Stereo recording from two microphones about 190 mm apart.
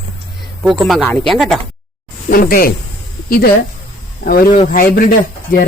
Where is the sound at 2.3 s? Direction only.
50° left (ahead or behind).